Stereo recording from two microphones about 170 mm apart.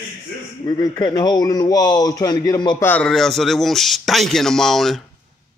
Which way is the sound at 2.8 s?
5° left (ahead or behind).